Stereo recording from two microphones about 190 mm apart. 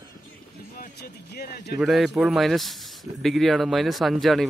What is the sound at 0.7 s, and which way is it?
Speech, 55° left (ahead or behind).